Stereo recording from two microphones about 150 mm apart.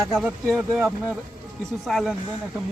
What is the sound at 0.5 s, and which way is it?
Speech, 10° right (ahead or behind).